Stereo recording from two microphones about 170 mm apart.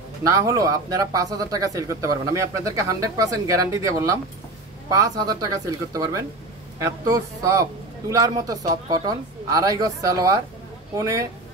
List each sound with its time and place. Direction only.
0.3 s speech: 20° right (ahead or behind)